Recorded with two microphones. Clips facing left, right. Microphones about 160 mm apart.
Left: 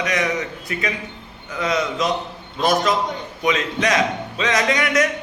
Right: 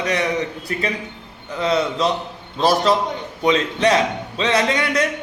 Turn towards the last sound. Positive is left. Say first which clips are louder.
# even
turn(degrees=-30)  # may be behind; listen again after turning